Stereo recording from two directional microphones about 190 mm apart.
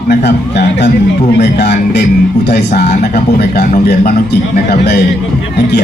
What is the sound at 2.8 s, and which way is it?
Speech, 50° left (ahead or behind).